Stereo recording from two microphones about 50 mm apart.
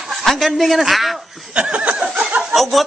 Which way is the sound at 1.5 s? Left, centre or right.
Right.